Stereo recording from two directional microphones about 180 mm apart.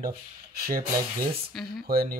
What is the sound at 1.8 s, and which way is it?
Speech, 55° right (ahead or behind).